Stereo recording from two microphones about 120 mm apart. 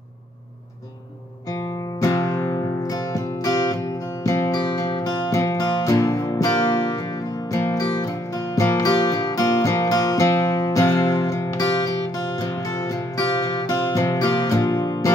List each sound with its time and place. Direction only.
2.0 s music: 25° left (ahead or behind)